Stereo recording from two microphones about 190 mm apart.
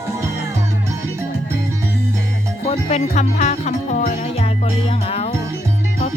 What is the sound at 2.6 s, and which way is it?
Music, 35° left (ahead or behind).